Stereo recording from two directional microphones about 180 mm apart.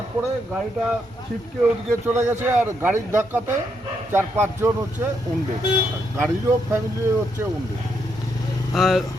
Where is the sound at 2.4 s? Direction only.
10° right (ahead or behind).